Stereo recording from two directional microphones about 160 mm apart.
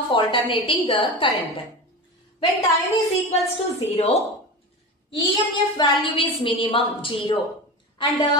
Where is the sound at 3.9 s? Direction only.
40° left (ahead or behind).